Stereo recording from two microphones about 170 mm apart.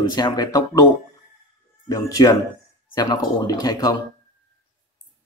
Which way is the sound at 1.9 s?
20° left (ahead or behind).